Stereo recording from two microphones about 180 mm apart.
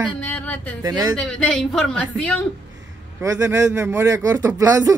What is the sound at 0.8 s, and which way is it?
Speech, 20° right (ahead or behind).